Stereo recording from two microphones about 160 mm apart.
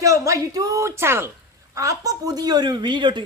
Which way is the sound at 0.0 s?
20° right (ahead or behind).